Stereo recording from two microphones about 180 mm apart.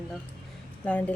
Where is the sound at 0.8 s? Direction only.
10° left (ahead or behind).